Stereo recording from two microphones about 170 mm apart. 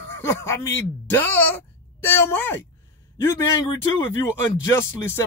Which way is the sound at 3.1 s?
20° left (ahead or behind).